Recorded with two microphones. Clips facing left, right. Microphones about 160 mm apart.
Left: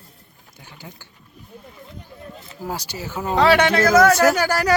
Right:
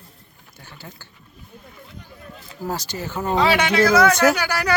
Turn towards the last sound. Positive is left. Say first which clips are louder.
# left 4 dB
turn(degrees=45)  # may be behind; listen again after turning